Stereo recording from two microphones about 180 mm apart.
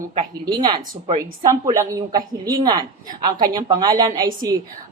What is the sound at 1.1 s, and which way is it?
Speech, 45° right (ahead or behind).